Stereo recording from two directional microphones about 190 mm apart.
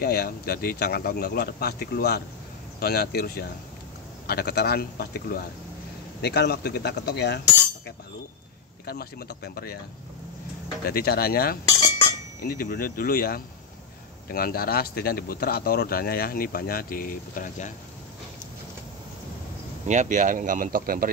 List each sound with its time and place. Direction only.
0.0 s speech: 55° left (ahead or behind)
10.9 s speech: 55° left (ahead or behind)
19.9 s speech: 40° right (ahead or behind)